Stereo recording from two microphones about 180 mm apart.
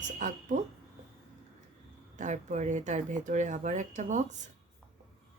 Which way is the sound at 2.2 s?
45° right (ahead or behind).